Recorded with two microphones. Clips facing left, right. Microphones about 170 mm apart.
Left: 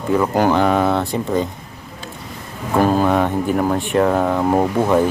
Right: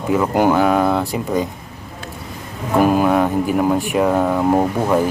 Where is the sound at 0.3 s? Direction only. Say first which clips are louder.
Right 2 dB; 10° right (ahead or behind).